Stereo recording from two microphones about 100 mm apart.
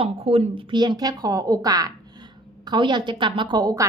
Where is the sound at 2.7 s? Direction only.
50° right (ahead or behind).